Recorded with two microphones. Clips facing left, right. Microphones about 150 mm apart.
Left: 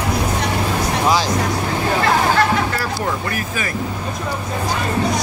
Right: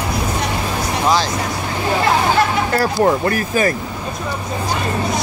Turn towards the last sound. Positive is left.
turn(degrees=-40)  # may be behind; listen again after turning